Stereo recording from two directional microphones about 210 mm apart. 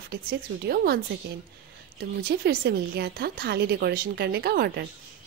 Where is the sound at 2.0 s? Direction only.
50° right (ahead or behind).